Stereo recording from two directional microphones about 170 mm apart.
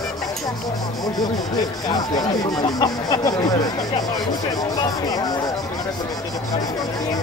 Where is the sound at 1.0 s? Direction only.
25° left (ahead or behind).